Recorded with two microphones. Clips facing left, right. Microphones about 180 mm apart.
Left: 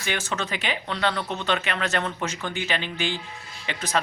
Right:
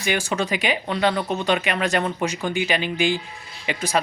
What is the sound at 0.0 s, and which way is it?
Speech, 15° right (ahead or behind).